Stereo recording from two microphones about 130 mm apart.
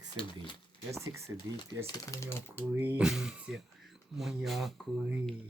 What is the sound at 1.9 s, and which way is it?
Speech, 25° left (ahead or behind).